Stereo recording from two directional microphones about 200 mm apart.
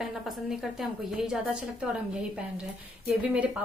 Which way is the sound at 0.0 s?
Centre (ahead or behind).